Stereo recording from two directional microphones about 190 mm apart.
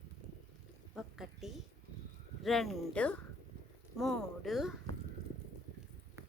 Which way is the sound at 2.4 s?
Centre (ahead or behind).